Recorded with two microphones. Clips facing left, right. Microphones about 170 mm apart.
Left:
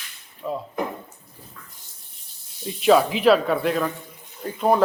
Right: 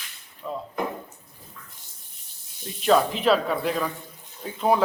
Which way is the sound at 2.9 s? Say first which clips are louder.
Left 4 dB; 5° left (ahead or behind).